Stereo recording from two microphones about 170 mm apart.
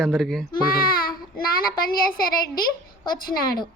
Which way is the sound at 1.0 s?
60° left (ahead or behind).